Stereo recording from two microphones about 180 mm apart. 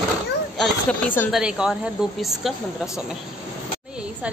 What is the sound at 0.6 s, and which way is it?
Speech, 5° left (ahead or behind).